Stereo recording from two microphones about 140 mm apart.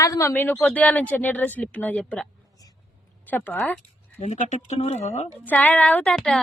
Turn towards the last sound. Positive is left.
turn(degrees=5)  # may be behind; listen again after turning